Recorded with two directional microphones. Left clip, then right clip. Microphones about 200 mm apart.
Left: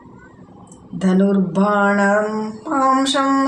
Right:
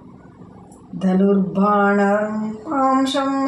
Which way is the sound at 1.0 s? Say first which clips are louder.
Even; 40° left (ahead or behind).